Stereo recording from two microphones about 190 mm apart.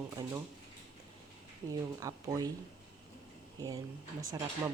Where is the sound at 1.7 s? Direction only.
20° right (ahead or behind).